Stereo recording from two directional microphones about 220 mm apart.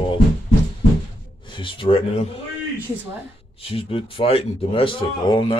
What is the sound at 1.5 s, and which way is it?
Speech, 20° left (ahead or behind).